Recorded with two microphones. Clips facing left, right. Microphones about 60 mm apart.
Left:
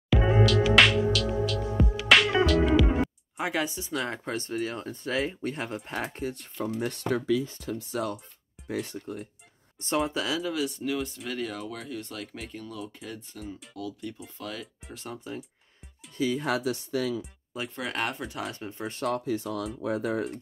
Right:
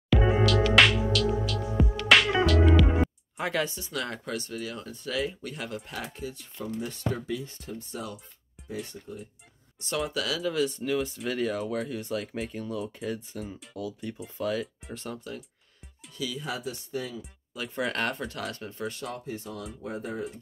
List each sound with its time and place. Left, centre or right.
0.1 s music: centre
3.4 s speech: centre
4.1 s speech: left
8.6 s speech: left
9.8 s speech: left
10.4 s speech: centre
12.5 s speech: centre
12.8 s speech: centre
16.2 s speech: left
16.4 s speech: left
17.5 s speech: left
17.9 s speech: centre
18.5 s speech: left
19.0 s speech: left